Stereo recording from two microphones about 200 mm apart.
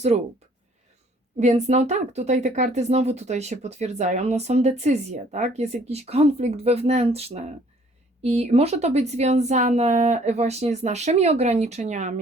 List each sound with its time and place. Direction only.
0.1 s speech: 35° right (ahead or behind)
1.4 s speech: 35° right (ahead or behind)